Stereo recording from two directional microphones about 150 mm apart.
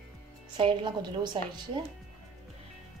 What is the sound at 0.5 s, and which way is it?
Speech, 35° right (ahead or behind).